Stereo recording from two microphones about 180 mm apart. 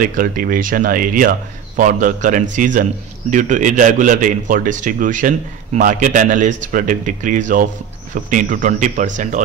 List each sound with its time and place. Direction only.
0.0 s a man's voice: 50° right (ahead or behind)